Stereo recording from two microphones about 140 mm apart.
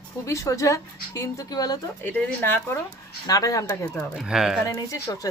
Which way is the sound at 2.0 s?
10° left (ahead or behind).